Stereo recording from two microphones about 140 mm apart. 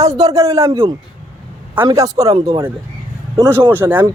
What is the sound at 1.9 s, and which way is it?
Speech, 25° right (ahead or behind).